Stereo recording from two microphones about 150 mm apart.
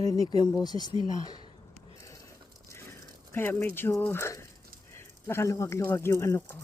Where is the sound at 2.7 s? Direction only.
15° left (ahead or behind).